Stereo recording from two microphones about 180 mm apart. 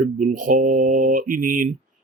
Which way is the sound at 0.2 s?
50° right (ahead or behind).